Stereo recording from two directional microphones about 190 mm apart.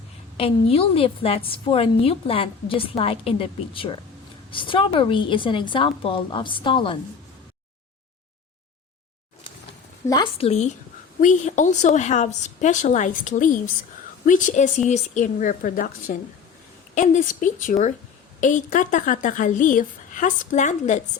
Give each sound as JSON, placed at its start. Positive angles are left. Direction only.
{"t": 0.3, "sound": "a woman's voice", "side_deg": 30}
{"t": 10.1, "sound": "a woman's voice", "side_deg": 25}